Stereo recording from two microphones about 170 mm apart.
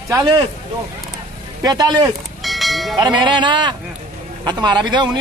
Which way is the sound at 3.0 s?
25° right (ahead or behind).